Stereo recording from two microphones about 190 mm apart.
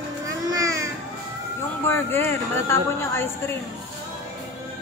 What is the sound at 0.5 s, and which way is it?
Babbling, 20° right (ahead or behind).